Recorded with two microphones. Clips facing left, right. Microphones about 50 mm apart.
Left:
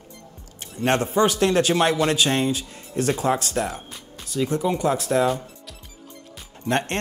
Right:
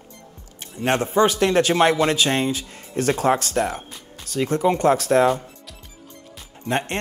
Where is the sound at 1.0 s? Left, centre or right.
Right.